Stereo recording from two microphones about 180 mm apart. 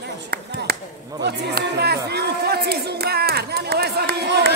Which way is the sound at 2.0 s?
65° right (ahead or behind).